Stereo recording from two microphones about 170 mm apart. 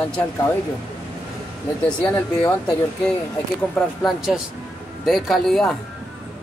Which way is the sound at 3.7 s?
Centre (ahead or behind).